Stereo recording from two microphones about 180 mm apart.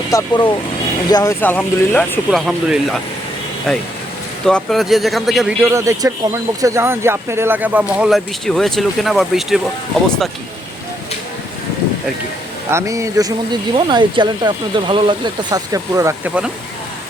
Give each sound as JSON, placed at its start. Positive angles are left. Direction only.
{"t": 0.1, "sound": "speech", "side_deg": 20}
{"t": 2.5, "sound": "speech", "side_deg": -5}
{"t": 4.4, "sound": "speech", "side_deg": 0}
{"t": 5.6, "sound": "speech", "side_deg": -15}
{"t": 12.7, "sound": "speech", "side_deg": -15}